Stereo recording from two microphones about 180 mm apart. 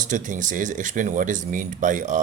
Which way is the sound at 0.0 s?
45° right (ahead or behind).